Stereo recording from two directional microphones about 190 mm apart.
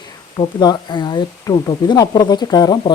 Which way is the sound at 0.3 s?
20° left (ahead or behind).